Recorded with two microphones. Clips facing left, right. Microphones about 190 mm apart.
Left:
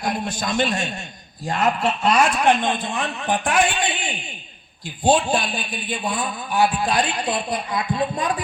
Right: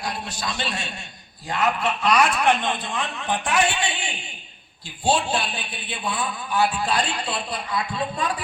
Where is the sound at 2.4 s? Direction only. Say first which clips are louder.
Left 3 dB; 15° left (ahead or behind).